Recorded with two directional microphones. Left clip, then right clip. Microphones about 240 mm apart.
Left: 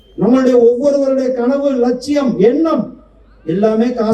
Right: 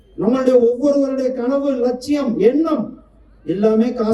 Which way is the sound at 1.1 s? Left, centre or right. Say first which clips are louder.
Left 4 dB; right.